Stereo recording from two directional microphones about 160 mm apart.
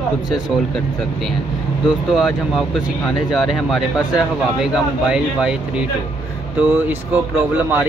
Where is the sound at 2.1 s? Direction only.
Centre (ahead or behind).